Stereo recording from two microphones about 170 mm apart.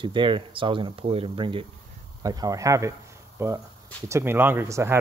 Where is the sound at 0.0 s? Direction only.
30° right (ahead or behind).